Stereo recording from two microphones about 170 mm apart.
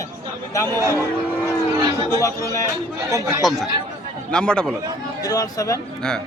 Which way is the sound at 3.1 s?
20° right (ahead or behind).